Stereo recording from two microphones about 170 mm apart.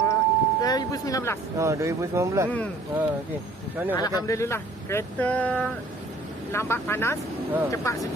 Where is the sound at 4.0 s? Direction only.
20° left (ahead or behind).